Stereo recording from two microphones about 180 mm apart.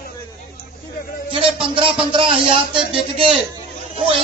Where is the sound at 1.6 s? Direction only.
30° right (ahead or behind).